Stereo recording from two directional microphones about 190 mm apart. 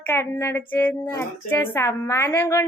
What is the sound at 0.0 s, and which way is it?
Speech, 10° left (ahead or behind).